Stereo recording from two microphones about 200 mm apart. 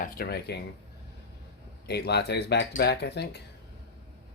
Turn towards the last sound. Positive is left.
turn(degrees=55)  # may be behind; listen again after turning